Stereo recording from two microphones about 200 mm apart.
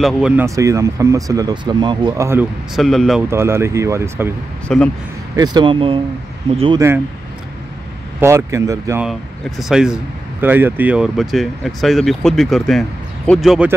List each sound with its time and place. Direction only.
0.0 s speech: 5° right (ahead or behind)
0.6 s speech: 15° right (ahead or behind)
2.7 s speech: centre (ahead or behind)
3.3 s speech: 10° right (ahead or behind)
4.6 s speech: 5° left (ahead or behind)
5.3 s speech: 20° right (ahead or behind)
8.2 s speech: 15° right (ahead or behind)
9.6 s speech: 5° right (ahead or behind)